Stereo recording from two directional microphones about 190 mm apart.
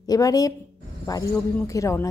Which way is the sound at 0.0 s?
20° left (ahead or behind).